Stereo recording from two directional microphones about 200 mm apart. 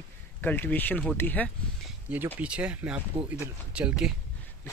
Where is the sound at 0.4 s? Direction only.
10° left (ahead or behind).